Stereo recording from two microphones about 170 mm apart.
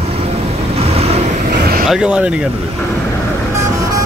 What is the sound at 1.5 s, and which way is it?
Vehicle, 65° right (ahead or behind).